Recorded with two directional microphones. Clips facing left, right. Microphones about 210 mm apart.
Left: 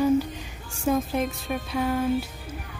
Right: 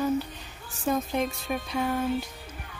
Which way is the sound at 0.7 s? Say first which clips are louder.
Left 3 dB; 5° left (ahead or behind).